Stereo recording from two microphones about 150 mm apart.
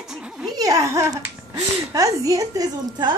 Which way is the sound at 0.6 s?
20° right (ahead or behind).